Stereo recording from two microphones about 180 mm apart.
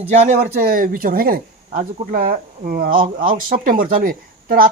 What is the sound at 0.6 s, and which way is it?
Speech, 50° right (ahead or behind).